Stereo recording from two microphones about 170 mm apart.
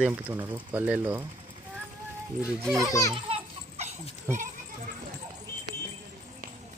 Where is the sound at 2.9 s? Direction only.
20° left (ahead or behind).